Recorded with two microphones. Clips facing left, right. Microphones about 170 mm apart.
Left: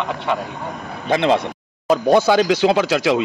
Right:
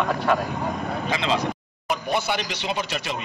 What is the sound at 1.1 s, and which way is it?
Speech, 60° left (ahead or behind).